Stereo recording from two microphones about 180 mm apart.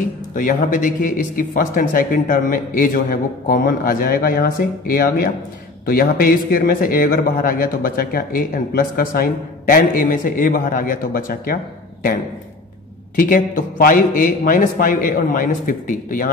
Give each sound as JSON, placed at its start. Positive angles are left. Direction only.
{"t": 0.3, "sound": "a man's voice", "side_deg": 50}
{"t": 13.1, "sound": "a man's voice", "side_deg": 50}